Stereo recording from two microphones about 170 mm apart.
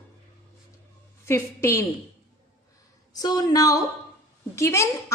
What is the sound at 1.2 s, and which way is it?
Speech, 15° left (ahead or behind).